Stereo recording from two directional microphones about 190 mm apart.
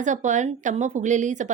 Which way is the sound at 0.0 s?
40° right (ahead or behind).